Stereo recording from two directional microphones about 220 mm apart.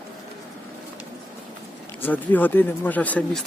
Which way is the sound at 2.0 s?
10° left (ahead or behind).